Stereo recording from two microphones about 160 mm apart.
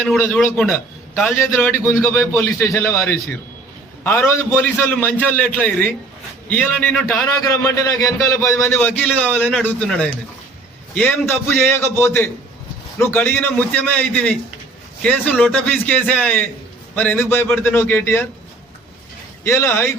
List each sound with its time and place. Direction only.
0.0 s a man's voice: 10° left (ahead or behind)
7.4 s a man's voice: 20° left (ahead or behind)
19.5 s a man's voice: 15° left (ahead or behind)